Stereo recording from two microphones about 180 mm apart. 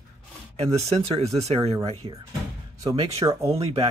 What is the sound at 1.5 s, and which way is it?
Speech, 25° right (ahead or behind).